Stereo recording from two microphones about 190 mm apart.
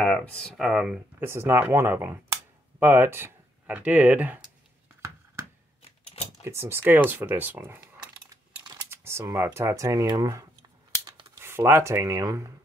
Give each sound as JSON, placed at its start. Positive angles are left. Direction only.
{"t": 0.0, "sound": "speech", "side_deg": 5}
{"t": 5.8, "sound": "typewriter", "side_deg": 30}
{"t": 6.4, "sound": "speech", "side_deg": -15}
{"t": 11.1, "sound": "a sound", "side_deg": -25}
{"t": 11.3, "sound": "speech", "side_deg": -15}